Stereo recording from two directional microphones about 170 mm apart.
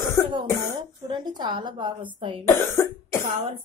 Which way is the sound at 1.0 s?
25° right (ahead or behind).